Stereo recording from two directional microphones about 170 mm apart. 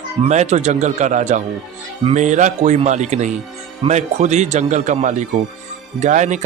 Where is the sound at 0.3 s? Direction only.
40° right (ahead or behind).